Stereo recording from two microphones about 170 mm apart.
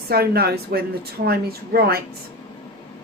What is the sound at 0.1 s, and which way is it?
A woman's voice, 65° right (ahead or behind).